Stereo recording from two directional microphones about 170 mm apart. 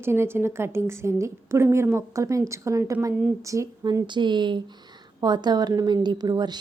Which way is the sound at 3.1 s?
10° right (ahead or behind).